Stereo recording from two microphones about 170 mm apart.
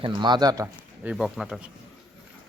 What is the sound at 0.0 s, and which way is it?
Speech, 25° right (ahead or behind).